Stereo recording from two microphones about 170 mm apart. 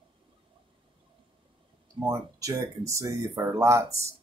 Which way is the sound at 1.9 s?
25° right (ahead or behind).